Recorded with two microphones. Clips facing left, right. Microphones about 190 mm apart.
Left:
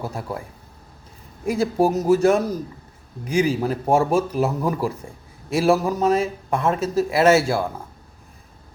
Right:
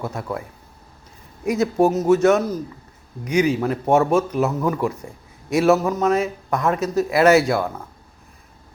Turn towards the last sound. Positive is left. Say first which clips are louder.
# right 2 dB
turn(degrees=30)  # may be behind; listen again after turning